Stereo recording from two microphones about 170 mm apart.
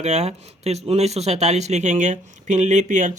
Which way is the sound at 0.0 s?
40° right (ahead or behind).